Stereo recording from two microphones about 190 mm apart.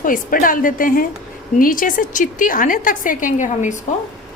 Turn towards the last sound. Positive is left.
turn(degrees=40)  # may be behind; listen again after turning